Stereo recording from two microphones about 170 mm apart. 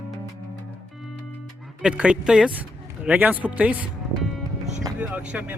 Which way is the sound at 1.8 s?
5° right (ahead or behind).